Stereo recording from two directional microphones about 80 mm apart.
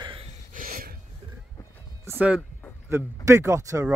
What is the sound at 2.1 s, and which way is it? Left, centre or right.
Speech, centre.